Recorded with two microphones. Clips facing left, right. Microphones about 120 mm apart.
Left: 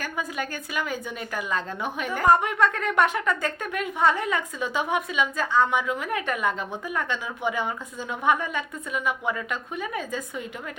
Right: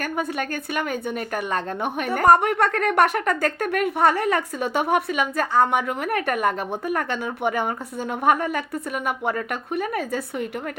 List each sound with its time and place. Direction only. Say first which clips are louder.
0.0 s a woman's voice: right 5 dB; 55° right (ahead or behind)
8.2 s a woman's voice: right 3 dB; 40° right (ahead or behind)
9.3 s a woman's voice: right 5 dB; 60° right (ahead or behind)